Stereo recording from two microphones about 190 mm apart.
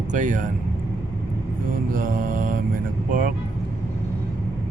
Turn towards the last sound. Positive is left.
turn(degrees=-50)  # may be behind; listen again after turning